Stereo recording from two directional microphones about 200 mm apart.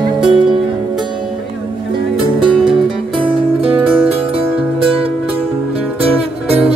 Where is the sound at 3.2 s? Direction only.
25° right (ahead or behind).